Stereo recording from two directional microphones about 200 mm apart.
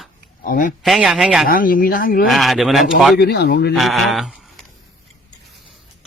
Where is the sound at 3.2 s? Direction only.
55° left (ahead or behind).